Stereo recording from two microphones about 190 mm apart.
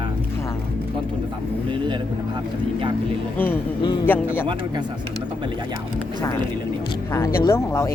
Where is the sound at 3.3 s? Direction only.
10° left (ahead or behind).